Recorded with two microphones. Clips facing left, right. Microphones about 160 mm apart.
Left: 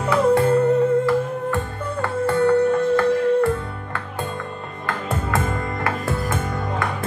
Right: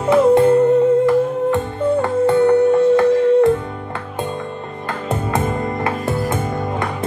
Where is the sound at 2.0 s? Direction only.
20° right (ahead or behind).